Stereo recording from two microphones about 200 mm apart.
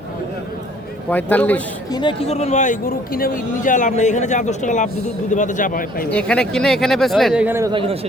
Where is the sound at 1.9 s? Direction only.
25° left (ahead or behind); by 6.1 s 45° left (ahead or behind).